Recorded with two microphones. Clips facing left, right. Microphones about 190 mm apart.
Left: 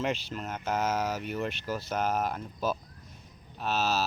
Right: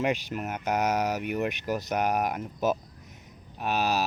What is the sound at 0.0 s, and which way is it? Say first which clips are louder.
Speech: right 4 dB; 15° right (ahead or behind).